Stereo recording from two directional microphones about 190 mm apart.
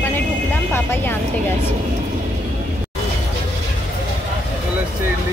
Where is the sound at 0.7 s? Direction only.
10° left (ahead or behind).